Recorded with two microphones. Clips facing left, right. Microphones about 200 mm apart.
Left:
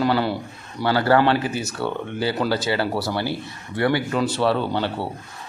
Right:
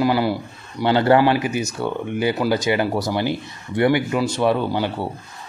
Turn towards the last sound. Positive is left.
turn(degrees=-10)  # may be behind; listen again after turning